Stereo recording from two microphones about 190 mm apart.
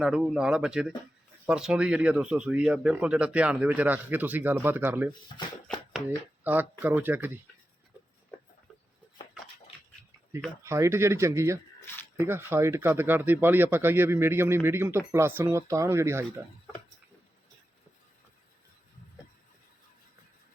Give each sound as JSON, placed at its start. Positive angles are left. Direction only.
{"t": 0.0, "sound": "speech", "side_deg": -5}
{"t": 5.6, "sound": "a sound", "side_deg": 5}
{"t": 6.1, "sound": "speech", "side_deg": -10}
{"t": 10.6, "sound": "speech", "side_deg": -15}